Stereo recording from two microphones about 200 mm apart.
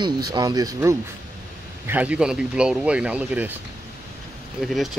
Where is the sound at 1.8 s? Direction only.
5° right (ahead or behind).